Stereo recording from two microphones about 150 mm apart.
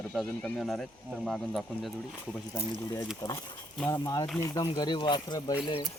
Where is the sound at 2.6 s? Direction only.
20° left (ahead or behind).